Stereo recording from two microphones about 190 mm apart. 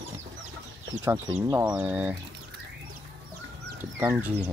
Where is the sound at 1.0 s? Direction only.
15° right (ahead or behind).